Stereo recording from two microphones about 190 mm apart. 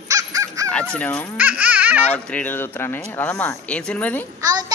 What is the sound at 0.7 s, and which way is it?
Speech, 5° left (ahead or behind).